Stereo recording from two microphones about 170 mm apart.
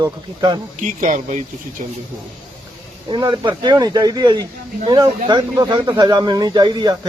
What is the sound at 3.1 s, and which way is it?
Speech, 25° right (ahead or behind).